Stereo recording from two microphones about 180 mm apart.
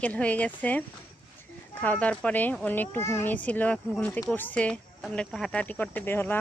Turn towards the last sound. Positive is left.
turn(degrees=10)  # may be behind; listen again after turning